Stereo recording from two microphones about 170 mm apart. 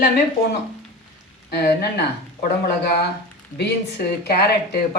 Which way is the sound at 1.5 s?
70° left (ahead or behind).